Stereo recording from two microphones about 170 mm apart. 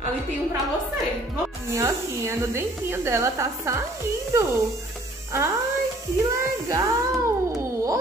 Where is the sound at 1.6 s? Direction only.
15° right (ahead or behind).